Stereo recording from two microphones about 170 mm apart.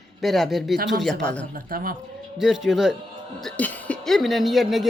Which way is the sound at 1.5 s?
60° right (ahead or behind).